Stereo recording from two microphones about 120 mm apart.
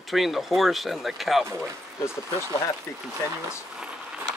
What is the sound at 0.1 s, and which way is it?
Speech, centre (ahead or behind).